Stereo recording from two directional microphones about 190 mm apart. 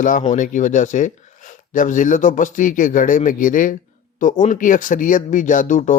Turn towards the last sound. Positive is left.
turn(degrees=40)  # may be behind; listen again after turning